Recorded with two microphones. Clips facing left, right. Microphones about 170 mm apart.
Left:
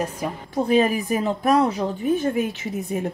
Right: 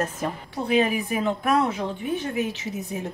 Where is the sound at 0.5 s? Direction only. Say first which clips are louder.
Left 4 dB; 45° left (ahead or behind).